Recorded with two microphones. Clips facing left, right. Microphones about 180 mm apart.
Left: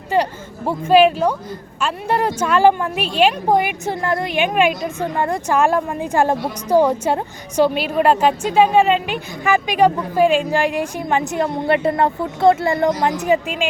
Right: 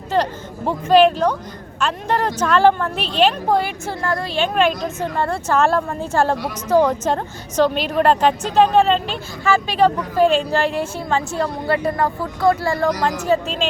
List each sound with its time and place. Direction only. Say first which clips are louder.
0.1 s a woman's voice: left 1 dB; 10° left (ahead or behind)